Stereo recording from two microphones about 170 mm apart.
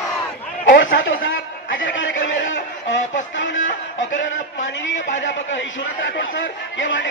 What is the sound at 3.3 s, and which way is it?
Music, 90° left.